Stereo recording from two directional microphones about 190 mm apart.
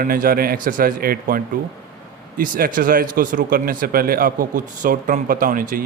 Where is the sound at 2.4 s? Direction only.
45° right (ahead or behind).